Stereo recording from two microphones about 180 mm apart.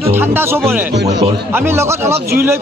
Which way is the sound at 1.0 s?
70° right (ahead or behind).